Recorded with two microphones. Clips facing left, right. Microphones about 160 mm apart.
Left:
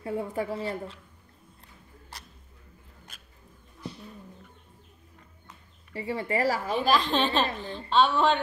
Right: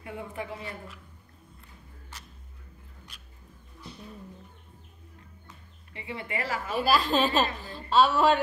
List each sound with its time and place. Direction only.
0.0 s a woman's voice: 35° left (ahead or behind)
5.9 s a woman's voice: 40° left (ahead or behind)
6.7 s a woman's voice: 5° right (ahead or behind)